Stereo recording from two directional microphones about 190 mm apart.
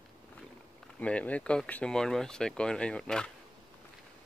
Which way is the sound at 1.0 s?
5° left (ahead or behind).